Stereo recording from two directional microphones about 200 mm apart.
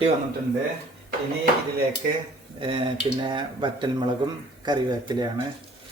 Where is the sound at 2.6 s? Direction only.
25° right (ahead or behind).